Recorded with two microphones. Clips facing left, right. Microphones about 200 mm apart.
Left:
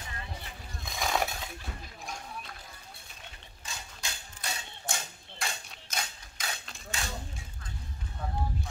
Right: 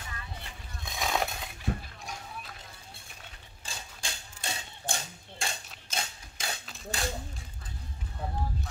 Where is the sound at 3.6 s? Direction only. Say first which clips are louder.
Right 1 dB; 30° right (ahead or behind).